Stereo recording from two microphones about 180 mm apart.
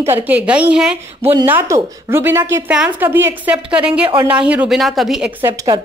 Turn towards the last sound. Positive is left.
turn(degrees=-20)  # may be behind; listen again after turning